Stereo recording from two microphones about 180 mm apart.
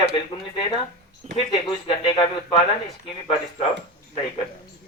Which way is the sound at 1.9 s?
30° left (ahead or behind).